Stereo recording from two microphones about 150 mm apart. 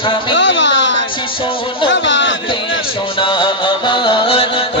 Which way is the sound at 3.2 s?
35° left (ahead or behind).